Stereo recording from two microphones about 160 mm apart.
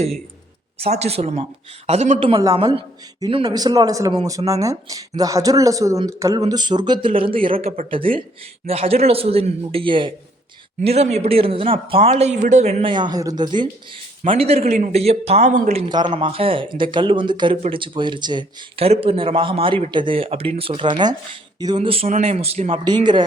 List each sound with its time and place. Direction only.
0.8 s speech: 40° right (ahead or behind)
2.6 s a man's voice: 30° right (ahead or behind)
12.9 s a man's voice: 25° right (ahead or behind)
14.3 s speech: 40° right (ahead or behind)
15.9 s a man's voice: 30° right (ahead or behind)
21.8 s speech: 40° right (ahead or behind)
22.8 s a man's voice: 30° right (ahead or behind)